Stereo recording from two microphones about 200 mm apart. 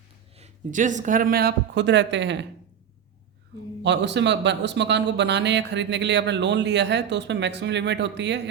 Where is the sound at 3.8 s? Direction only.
60° right (ahead or behind).